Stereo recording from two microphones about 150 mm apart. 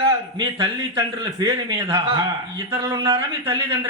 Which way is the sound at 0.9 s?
25° right (ahead or behind).